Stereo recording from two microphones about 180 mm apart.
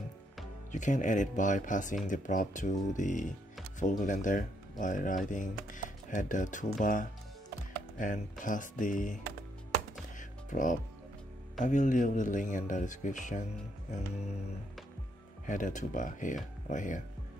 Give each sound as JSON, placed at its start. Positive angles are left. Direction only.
{"t": 0.7, "sound": "speech", "side_deg": 45}
{"t": 10.5, "sound": "speech", "side_deg": 45}
{"t": 15.4, "sound": "speech", "side_deg": 45}